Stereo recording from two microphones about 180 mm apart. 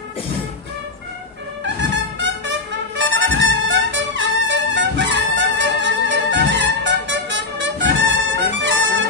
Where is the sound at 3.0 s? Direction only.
90° right.